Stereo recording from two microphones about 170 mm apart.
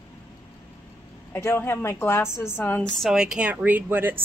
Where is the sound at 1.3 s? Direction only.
15° left (ahead or behind).